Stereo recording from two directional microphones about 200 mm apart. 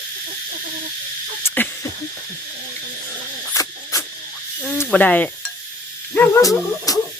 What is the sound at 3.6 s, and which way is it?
Cricket, 15° left (ahead or behind).